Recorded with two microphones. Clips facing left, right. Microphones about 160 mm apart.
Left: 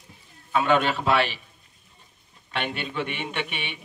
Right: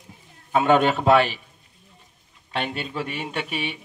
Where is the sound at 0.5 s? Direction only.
40° right (ahead or behind).